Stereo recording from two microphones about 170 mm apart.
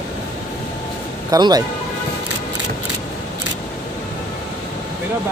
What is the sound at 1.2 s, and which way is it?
Speech, 25° right (ahead or behind).